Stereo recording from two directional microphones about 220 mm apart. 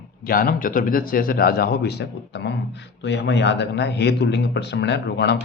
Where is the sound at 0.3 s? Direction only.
40° left (ahead or behind).